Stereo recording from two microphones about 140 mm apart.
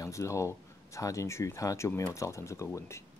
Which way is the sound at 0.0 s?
20° left (ahead or behind).